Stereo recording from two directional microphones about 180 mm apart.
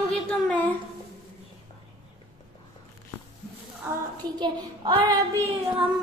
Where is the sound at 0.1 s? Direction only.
5° left (ahead or behind).